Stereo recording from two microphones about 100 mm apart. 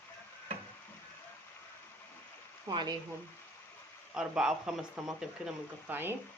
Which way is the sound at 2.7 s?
50° right (ahead or behind).